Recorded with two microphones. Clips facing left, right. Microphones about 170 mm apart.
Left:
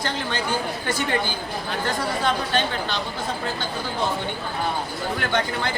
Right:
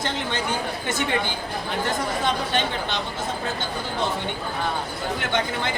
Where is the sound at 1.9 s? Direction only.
20° right (ahead or behind).